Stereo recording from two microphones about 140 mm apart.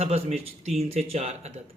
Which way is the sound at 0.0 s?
45° right (ahead or behind).